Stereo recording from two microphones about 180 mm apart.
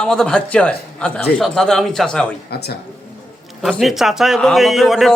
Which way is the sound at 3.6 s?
Centre (ahead or behind).